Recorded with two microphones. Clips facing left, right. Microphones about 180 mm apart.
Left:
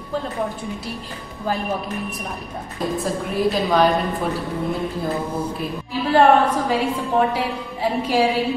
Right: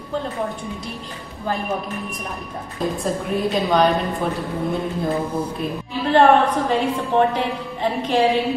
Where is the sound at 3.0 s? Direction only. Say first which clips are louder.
Left 2 dB; centre (ahead or behind).